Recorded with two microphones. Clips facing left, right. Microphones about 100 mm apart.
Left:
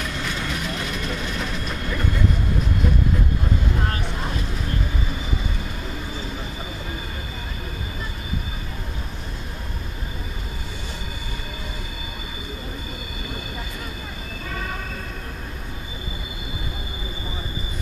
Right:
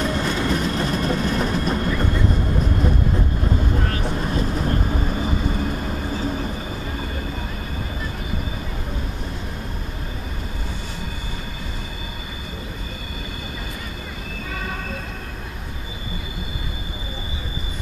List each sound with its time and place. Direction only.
0.0 s train: 40° right (ahead or behind)